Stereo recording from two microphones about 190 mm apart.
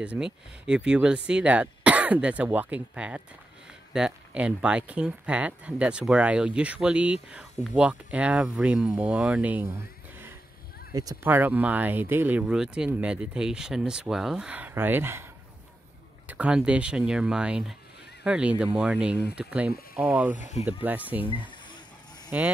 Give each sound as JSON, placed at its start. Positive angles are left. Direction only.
{"t": 0.0, "sound": "speech", "side_deg": -5}
{"t": 10.9, "sound": "speech", "side_deg": -20}
{"t": 16.3, "sound": "speech", "side_deg": -5}
{"t": 20.3, "sound": "speech", "side_deg": 40}
{"t": 20.8, "sound": "speech", "side_deg": -10}
{"t": 22.3, "sound": "speech", "side_deg": -10}